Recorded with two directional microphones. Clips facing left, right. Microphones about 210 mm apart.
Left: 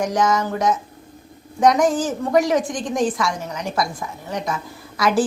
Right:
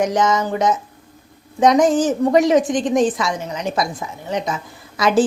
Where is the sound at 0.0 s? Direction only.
20° right (ahead or behind).